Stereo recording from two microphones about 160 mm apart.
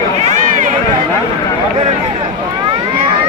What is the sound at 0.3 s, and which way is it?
Run, 55° right (ahead or behind).